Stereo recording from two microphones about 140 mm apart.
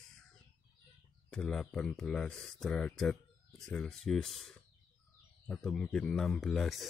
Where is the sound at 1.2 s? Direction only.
5° left (ahead or behind).